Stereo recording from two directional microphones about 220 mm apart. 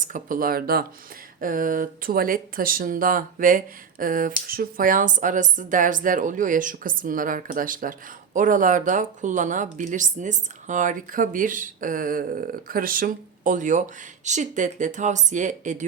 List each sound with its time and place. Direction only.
0.0 s speech: 35° right (ahead or behind)